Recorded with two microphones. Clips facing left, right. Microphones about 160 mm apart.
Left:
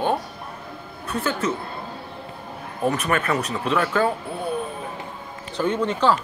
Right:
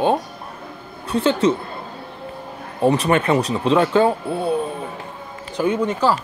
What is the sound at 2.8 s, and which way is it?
Speech, 30° right (ahead or behind).